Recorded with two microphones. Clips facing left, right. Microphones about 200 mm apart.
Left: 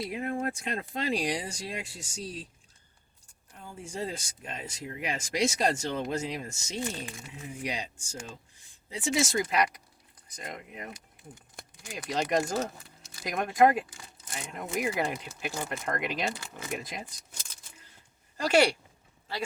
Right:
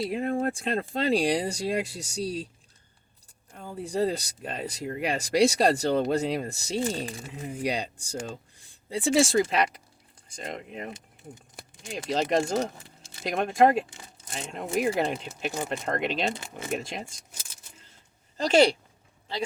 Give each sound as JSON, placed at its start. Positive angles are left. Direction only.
{"t": 0.0, "sound": "speech", "side_deg": -35}
{"t": 3.8, "sound": "speech", "side_deg": -35}
{"t": 18.3, "sound": "speech", "side_deg": -25}